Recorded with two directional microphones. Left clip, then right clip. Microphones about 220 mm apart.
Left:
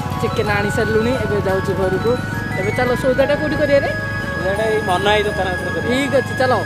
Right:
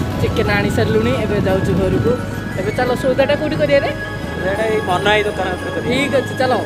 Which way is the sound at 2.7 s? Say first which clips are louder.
Right 1 dB; 10° left (ahead or behind).